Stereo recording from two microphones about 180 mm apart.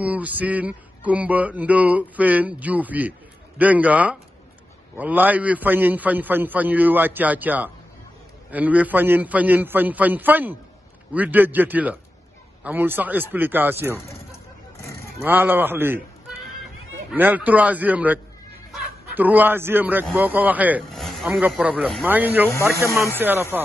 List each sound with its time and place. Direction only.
0.0 s speech: 10° right (ahead or behind)
15.2 s speech: 10° right (ahead or behind)
17.1 s speech: 10° right (ahead or behind)